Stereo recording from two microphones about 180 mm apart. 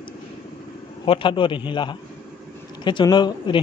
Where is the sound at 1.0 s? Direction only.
30° left (ahead or behind).